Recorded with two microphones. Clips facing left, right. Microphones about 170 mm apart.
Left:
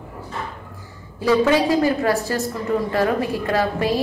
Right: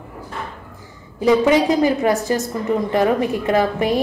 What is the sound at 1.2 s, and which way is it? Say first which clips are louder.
A woman's voice: right 2 dB; 20° right (ahead or behind).